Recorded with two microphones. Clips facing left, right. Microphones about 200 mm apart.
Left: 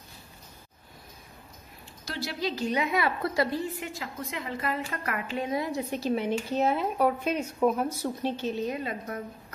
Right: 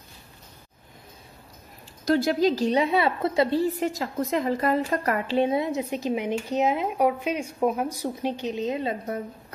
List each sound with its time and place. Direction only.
2.1 s a woman's voice: 50° right (ahead or behind); by 9.2 s 25° right (ahead or behind)